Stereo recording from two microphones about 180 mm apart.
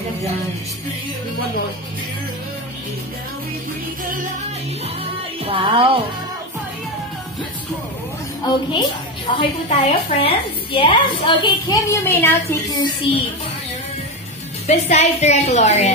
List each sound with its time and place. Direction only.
5.4 s speech: 30° right (ahead or behind)
8.7 s a woman's voice: 25° left (ahead or behind)
14.7 s a woman's voice: 40° left (ahead or behind)